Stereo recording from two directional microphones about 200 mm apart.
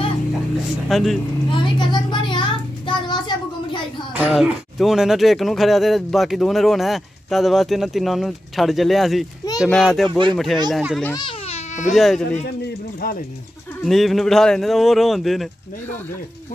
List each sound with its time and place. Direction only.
0.8 s speech: centre (ahead or behind)
1.5 s vehicle: 25° left (ahead or behind)
2.9 s a sound: 20° left (ahead or behind)
4.1 s speech: 5° right (ahead or behind)
11.1 s speech: 20° left (ahead or behind)
11.5 s baby cry: 35° left (ahead or behind)
11.9 s speech: centre (ahead or behind)
12.4 s a man's voice: 50° left (ahead or behind)
13.8 s speech: centre (ahead or behind)